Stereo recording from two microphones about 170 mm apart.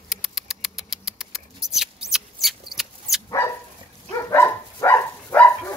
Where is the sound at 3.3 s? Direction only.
20° left (ahead or behind).